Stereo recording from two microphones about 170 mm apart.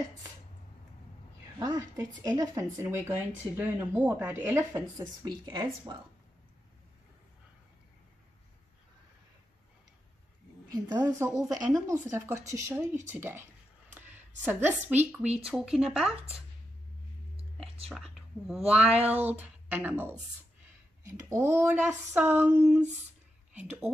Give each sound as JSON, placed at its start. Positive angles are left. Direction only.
{"t": 1.6, "sound": "speech", "side_deg": -20}
{"t": 10.7, "sound": "a woman's voice", "side_deg": -25}
{"t": 13.9, "sound": "a sound", "side_deg": -10}
{"t": 15.0, "sound": "speech", "side_deg": -5}
{"t": 17.8, "sound": "speech", "side_deg": 0}
{"t": 18.9, "sound": "a sound", "side_deg": -10}
{"t": 21.0, "sound": "speech", "side_deg": -15}